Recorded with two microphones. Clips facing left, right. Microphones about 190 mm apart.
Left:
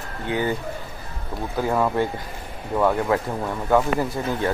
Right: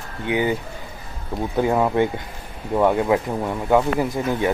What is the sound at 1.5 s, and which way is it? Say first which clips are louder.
Speech: right 3 dB; 20° right (ahead or behind).